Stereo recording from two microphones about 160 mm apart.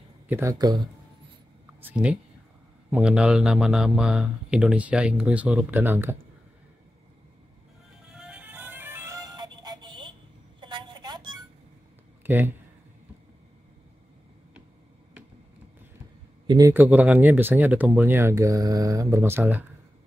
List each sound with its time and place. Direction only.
0.3 s speech: 20° right (ahead or behind)
1.8 s speech: 10° right (ahead or behind)
8.1 s music: 5° right (ahead or behind); by 10.1 s 30° right (ahead or behind)
10.6 s a sound: 30° right (ahead or behind)
12.2 s speech: 10° right (ahead or behind)
16.4 s a man's voice: 25° right (ahead or behind)
16.7 s speech: 10° right (ahead or behind)